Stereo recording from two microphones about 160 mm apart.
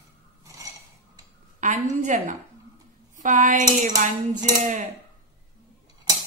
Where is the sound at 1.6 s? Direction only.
50° right (ahead or behind).